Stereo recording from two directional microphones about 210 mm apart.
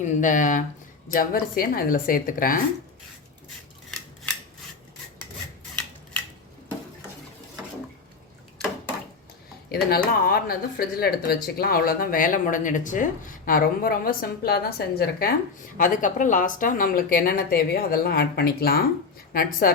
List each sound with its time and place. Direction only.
0.0 s speech: 35° left (ahead or behind)
9.9 s speech: 45° left (ahead or behind)